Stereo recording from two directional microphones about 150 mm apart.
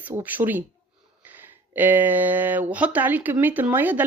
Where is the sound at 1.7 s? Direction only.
10° right (ahead or behind).